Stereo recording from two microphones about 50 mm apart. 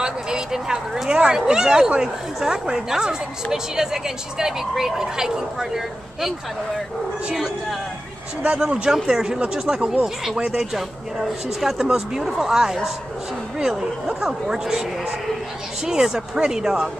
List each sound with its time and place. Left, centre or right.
0.0 s a sound: centre
1.0 s speech: centre
8.5 s speech: centre